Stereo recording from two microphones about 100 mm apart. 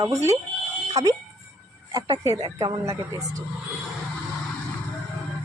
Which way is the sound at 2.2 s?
40° right (ahead or behind).